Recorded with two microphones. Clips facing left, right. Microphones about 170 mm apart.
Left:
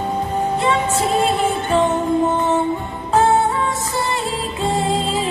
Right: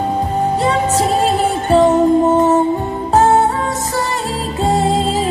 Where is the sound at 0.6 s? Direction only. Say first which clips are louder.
Right 3 dB; 40° right (ahead or behind).